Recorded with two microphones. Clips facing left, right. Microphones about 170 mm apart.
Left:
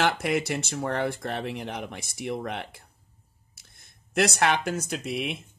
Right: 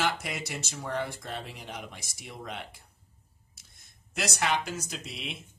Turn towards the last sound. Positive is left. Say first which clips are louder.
# left 9 dB
turn(degrees=60)  # may be behind; listen again after turning